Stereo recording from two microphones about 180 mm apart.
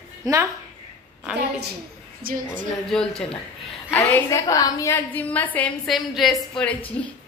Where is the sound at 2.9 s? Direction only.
5° left (ahead or behind).